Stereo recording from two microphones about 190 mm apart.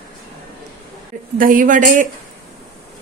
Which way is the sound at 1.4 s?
45° right (ahead or behind).